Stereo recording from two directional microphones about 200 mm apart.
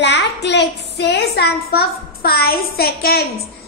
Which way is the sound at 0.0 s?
60° left (ahead or behind).